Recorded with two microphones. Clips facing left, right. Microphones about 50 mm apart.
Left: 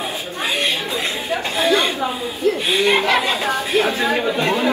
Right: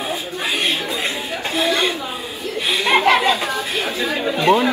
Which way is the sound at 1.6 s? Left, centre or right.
Left.